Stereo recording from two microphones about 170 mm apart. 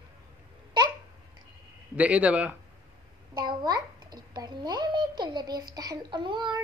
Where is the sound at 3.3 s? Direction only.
25° right (ahead or behind).